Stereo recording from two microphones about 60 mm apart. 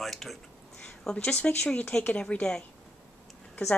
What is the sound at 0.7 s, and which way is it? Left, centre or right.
A woman's voice, centre.